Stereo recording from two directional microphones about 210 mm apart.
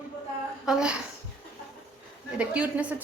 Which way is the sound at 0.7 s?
5° right (ahead or behind).